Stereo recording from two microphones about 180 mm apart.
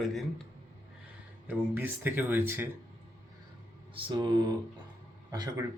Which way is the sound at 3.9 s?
25° right (ahead or behind).